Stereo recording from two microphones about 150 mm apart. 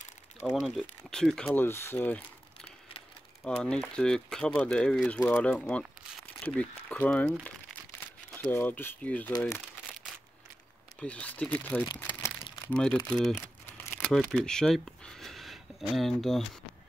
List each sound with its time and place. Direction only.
0.5 s speech: centre (ahead or behind)
8.4 s speech: 15° left (ahead or behind)
11.0 s speech: 10° left (ahead or behind)
12.0 s crumpling: 15° left (ahead or behind)
12.7 s speech: 5° left (ahead or behind)
13.7 s shuffling cards: 10° left (ahead or behind)